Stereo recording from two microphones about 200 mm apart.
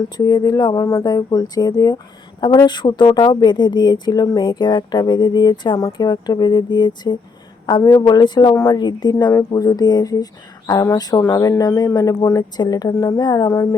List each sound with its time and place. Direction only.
0.3 s speech: 20° left (ahead or behind)